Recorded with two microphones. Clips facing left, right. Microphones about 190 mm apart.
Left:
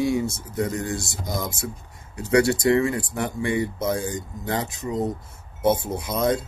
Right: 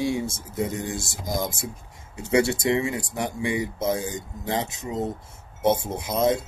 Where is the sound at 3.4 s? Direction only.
20° right (ahead or behind).